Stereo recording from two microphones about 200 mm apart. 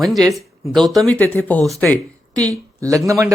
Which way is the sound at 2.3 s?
15° right (ahead or behind).